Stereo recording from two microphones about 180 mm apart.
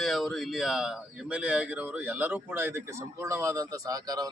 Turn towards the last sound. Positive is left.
turn(degrees=-20)  # may be behind; listen again after turning